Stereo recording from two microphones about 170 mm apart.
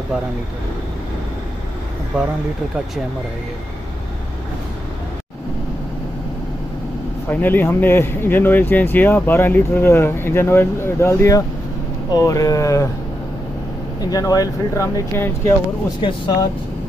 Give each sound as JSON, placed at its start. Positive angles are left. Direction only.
{"t": 7.2, "sound": "speech", "side_deg": 10}
{"t": 14.0, "sound": "speech", "side_deg": 20}